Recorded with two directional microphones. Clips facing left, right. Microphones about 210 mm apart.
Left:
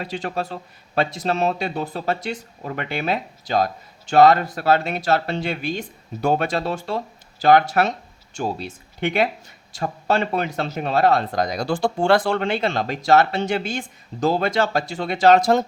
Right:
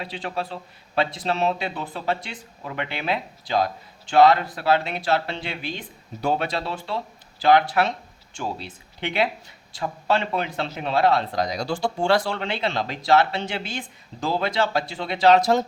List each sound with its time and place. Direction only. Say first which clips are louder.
0.0 s speech: left 3 dB; 45° left (ahead or behind)